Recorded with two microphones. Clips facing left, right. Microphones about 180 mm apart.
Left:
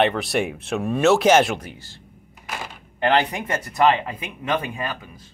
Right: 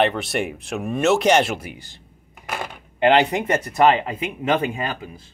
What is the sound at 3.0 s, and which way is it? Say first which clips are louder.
Speech: right 4 dB; 25° right (ahead or behind).